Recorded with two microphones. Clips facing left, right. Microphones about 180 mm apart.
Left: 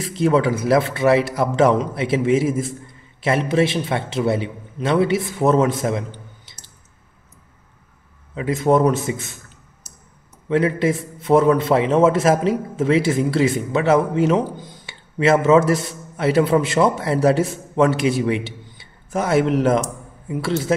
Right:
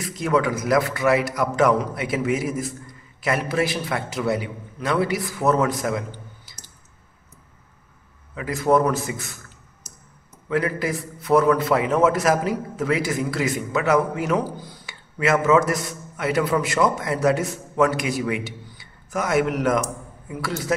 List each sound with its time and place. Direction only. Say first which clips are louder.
0.0 s a man's voice: left 4 dB; 30° left (ahead or behind)
8.4 s a man's voice: left 3 dB; 25° left (ahead or behind)
10.5 s a man's voice: left 5 dB; 25° left (ahead or behind)